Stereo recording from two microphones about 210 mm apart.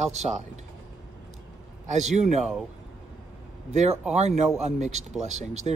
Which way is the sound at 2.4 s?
Centre (ahead or behind).